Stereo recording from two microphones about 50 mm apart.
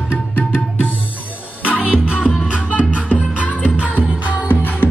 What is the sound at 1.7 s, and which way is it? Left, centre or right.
Music, right.